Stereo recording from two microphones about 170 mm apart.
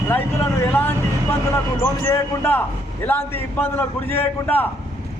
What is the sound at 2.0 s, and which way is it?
A man's voice, 15° left (ahead or behind).